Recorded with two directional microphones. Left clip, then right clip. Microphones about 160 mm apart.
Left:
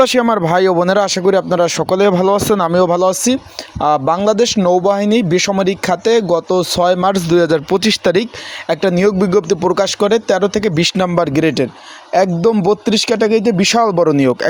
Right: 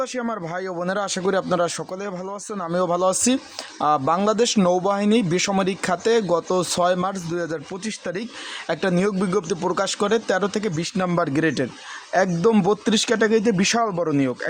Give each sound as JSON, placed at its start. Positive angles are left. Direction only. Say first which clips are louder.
{"t": 0.0, "sound": "speech", "louder": "left 15 dB", "side_deg": 55}
{"t": 2.7, "sound": "speech", "louder": "left 4 dB", "side_deg": 30}
{"t": 7.0, "sound": "speech", "louder": "left 13 dB", "side_deg": 45}
{"t": 8.7, "sound": "speech", "louder": "left 9 dB", "side_deg": 25}
{"t": 10.8, "sound": "speech", "louder": "left 10 dB", "side_deg": 40}
{"t": 11.1, "sound": "speech", "louder": "left 7 dB", "side_deg": 25}
{"t": 12.1, "sound": "speech", "louder": "left 6 dB", "side_deg": 15}